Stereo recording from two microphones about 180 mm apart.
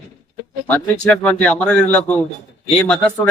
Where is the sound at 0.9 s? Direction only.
5° left (ahead or behind).